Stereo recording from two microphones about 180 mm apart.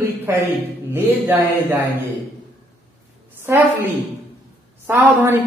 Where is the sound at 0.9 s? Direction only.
15° right (ahead or behind).